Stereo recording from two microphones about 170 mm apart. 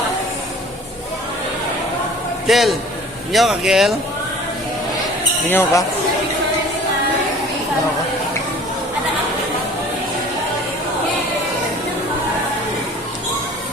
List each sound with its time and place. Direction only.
2.5 s speech: centre (ahead or behind)
5.5 s speech: 15° left (ahead or behind)